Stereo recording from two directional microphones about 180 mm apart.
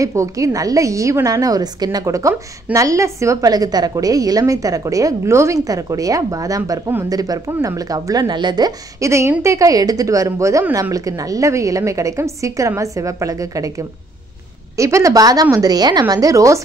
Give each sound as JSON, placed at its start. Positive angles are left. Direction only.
{"t": 0.0, "sound": "a woman's voice", "side_deg": -15}